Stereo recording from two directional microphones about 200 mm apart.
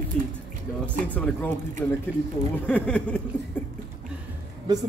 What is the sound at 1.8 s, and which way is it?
Speech, 10° left (ahead or behind).